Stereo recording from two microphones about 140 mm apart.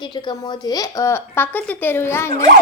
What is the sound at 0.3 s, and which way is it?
Speech, 25° left (ahead or behind).